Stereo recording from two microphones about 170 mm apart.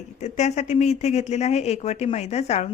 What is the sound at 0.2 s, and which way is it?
A woman's voice, 40° left (ahead or behind).